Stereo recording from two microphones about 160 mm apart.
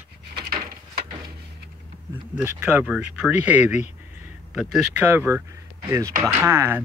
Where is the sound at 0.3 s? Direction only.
75° right (ahead or behind).